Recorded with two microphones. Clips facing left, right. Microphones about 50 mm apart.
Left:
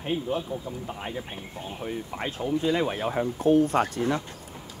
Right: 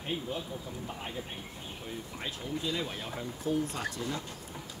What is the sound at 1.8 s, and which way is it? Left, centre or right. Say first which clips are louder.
Speech: left 8 dB; left.